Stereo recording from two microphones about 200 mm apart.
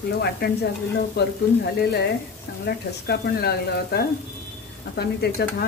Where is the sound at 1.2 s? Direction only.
55° left (ahead or behind).